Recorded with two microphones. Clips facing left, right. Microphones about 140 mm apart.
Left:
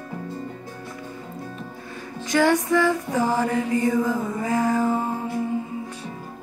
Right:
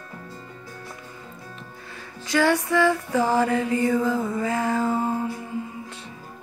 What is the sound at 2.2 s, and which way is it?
Music, 20° left (ahead or behind).